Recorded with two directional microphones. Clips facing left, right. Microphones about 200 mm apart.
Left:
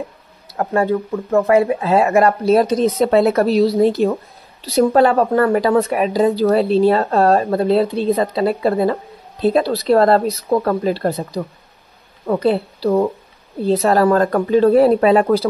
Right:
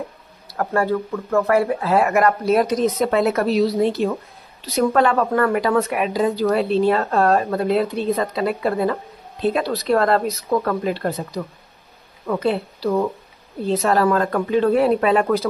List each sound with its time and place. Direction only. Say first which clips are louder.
0.5 s speech: left 3 dB; 20° left (ahead or behind)